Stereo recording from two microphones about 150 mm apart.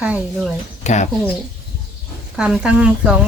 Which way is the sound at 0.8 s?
50° left (ahead or behind).